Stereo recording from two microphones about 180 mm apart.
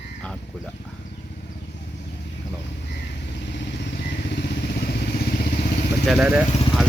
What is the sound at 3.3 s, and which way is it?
Vehicle, 75° left (ahead or behind).